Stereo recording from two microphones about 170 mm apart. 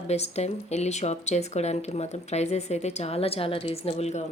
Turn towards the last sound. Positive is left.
turn(degrees=40)  # may be behind; listen again after turning